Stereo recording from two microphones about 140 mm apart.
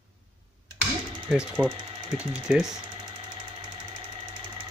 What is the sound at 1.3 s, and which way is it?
Speech, 5° right (ahead or behind).